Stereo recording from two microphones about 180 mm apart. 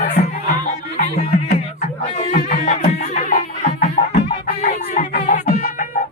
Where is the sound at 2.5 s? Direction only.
40° left (ahead or behind).